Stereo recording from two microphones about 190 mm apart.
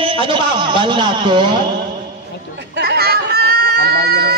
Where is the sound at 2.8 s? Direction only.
55° right (ahead or behind).